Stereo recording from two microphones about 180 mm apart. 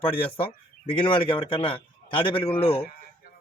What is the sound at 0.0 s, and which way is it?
A man's voice, 30° left (ahead or behind).